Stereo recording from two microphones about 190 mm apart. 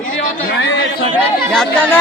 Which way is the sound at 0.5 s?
70° left (ahead or behind).